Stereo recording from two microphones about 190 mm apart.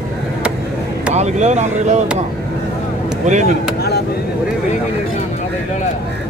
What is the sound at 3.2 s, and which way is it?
Speech, 40° right (ahead or behind).